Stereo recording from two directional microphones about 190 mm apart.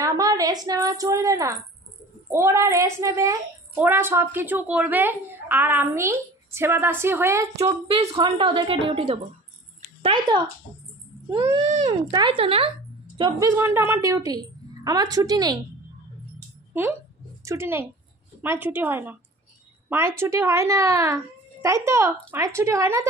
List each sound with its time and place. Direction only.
0.0 s a woman's voice: 20° right (ahead or behind)
7.9 s a woman's voice: 30° right (ahead or behind)
11.2 s a sound: 15° right (ahead or behind)
11.6 s speech: 40° right (ahead or behind)
12.1 s a woman's voice: 25° right (ahead or behind)
13.2 s a woman's voice: 15° right (ahead or behind)
17.5 s a woman's voice: 15° right (ahead or behind)